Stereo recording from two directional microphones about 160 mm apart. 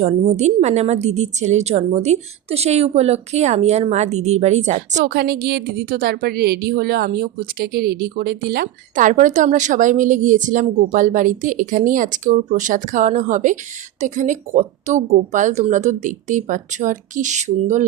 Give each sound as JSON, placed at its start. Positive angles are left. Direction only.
{"t": 0.0, "sound": "a woman's voice", "side_deg": -45}
{"t": 5.0, "sound": "a woman's voice", "side_deg": -80}